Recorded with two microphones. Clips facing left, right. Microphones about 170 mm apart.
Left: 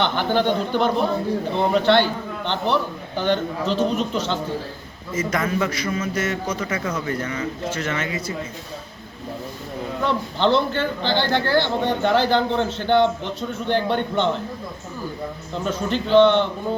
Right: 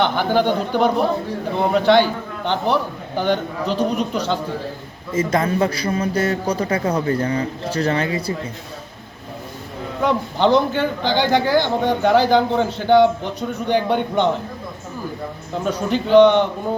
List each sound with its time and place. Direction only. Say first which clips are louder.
0.0 s a man's voice: right 3 dB; 10° right (ahead or behind)
3.2 s a man's voice: right 1 dB; 10° right (ahead or behind)
5.1 s a man's voice: right 4 dB; 30° right (ahead or behind)
10.0 s a man's voice: right 4 dB; 15° right (ahead or behind)
15.6 s a man's voice: right 3 dB; 10° right (ahead or behind)